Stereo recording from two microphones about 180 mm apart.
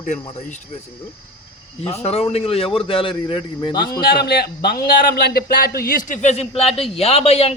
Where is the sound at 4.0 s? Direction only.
60° left (ahead or behind).